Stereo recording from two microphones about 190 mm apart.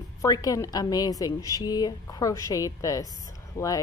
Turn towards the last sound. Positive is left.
turn(degrees=15)  # may be behind; listen again after turning